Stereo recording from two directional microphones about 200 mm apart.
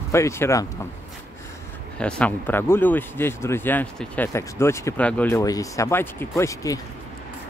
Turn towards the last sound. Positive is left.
turn(degrees=15)  # may be behind; listen again after turning